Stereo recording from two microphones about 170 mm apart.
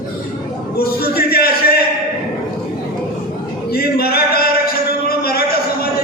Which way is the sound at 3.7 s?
65° left (ahead or behind).